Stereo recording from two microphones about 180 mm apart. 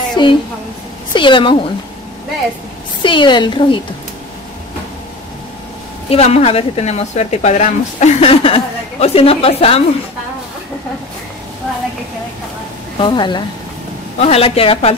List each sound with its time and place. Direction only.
0.1 s a sound: 25° left (ahead or behind)
1.1 s a woman's voice: 25° left (ahead or behind)
3.0 s a woman's voice: 25° left (ahead or behind)
6.0 s speech: 35° left (ahead or behind)
13.0 s a woman's voice: 25° left (ahead or behind)